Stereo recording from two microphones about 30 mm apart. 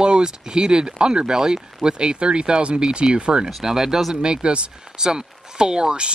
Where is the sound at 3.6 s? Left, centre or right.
Centre.